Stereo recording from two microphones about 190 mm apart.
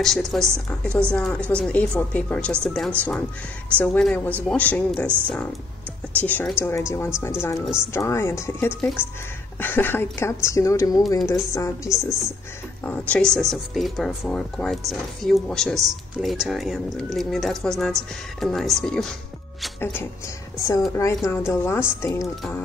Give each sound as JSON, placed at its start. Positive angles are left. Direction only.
{"t": 0.0, "sound": "a woman's voice", "side_deg": 0}
{"t": 6.2, "sound": "a woman's voice", "side_deg": 10}
{"t": 7.6, "sound": "speech", "side_deg": -5}
{"t": 7.9, "sound": "a woman's voice", "side_deg": 15}
{"t": 13.1, "sound": "a woman's voice", "side_deg": 5}